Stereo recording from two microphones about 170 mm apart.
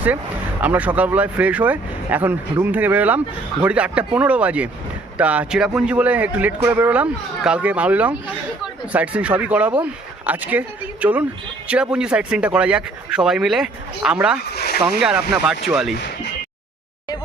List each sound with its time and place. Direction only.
0.6 s speech: 10° right (ahead or behind)
14.5 s speech: 70° left (ahead or behind)
14.8 s speech: 5° right (ahead or behind)